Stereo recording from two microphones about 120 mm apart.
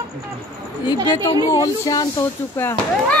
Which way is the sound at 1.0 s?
35° left (ahead or behind).